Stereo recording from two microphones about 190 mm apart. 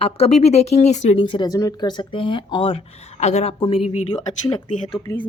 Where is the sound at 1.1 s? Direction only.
25° left (ahead or behind).